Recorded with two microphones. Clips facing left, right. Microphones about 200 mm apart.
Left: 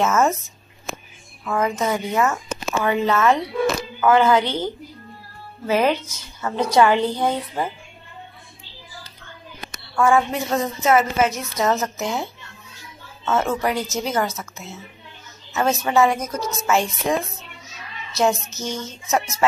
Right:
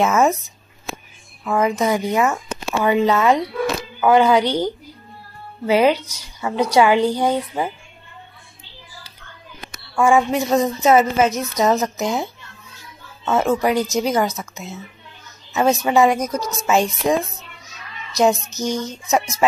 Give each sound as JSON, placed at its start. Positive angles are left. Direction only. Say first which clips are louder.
{"t": 0.0, "sound": "a woman's voice", "louder": "right 2 dB", "side_deg": -15}
{"t": 1.4, "sound": "a woman's voice", "louder": "right 3 dB", "side_deg": -15}
{"t": 5.9, "sound": "a woman's voice", "louder": "left 1 dB", "side_deg": -70}
{"t": 6.4, "sound": "a woman's voice", "louder": "right 1 dB", "side_deg": -10}
{"t": 9.9, "sound": "a woman's voice", "louder": "right 2 dB", "side_deg": -15}